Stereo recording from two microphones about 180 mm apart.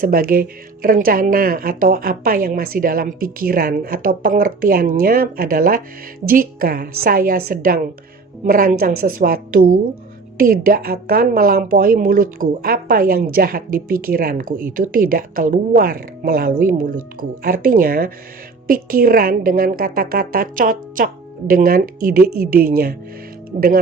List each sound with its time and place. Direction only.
0.0 s a woman's voice: 55° right (ahead or behind)